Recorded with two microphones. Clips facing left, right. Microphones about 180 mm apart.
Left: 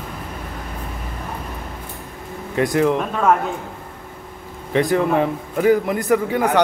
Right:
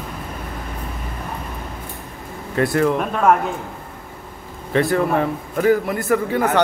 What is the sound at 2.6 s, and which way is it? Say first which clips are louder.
Speech: even; 15° left (ahead or behind).